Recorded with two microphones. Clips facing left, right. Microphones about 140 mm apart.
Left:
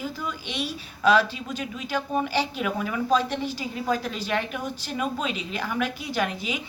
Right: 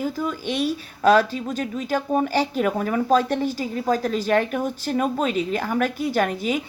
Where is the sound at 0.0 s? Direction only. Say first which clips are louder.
Right 7 dB; 45° right (ahead or behind).